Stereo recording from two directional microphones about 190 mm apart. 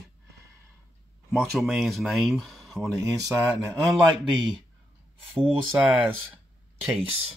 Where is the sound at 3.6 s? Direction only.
20° right (ahead or behind).